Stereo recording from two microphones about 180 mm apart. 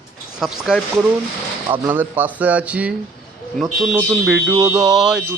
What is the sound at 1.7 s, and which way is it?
Speech, 10° right (ahead or behind).